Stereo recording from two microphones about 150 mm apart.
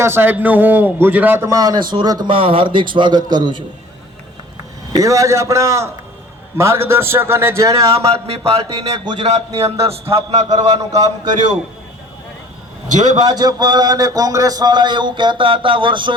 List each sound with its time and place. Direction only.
0.0 s a man's voice: 15° right (ahead or behind)
4.9 s a man's voice: 25° right (ahead or behind)
7.9 s a man's voice: 40° right (ahead or behind)
10.5 s a man's voice: 25° right (ahead or behind)
12.9 s a man's voice: 55° right (ahead or behind)
13.2 s a man's voice: 25° right (ahead or behind)